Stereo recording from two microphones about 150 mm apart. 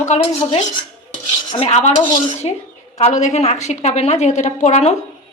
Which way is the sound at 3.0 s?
50° left (ahead or behind).